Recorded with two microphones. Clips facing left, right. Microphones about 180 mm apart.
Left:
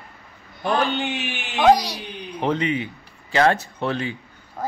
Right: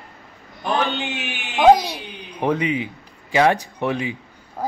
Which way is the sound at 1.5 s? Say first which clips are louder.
Right 3 dB; 15° right (ahead or behind).